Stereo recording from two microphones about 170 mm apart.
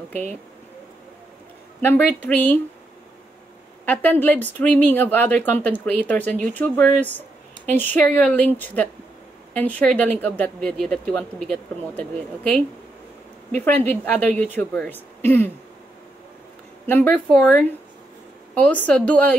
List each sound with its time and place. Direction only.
1.8 s speech: 10° left (ahead or behind)
3.8 s speech: 10° left (ahead or behind)
16.8 s speech: 10° left (ahead or behind)